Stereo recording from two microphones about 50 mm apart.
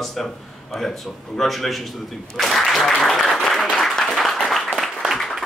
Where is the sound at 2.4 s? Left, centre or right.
Centre.